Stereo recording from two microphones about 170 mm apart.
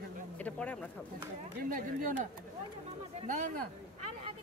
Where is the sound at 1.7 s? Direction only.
50° right (ahead or behind).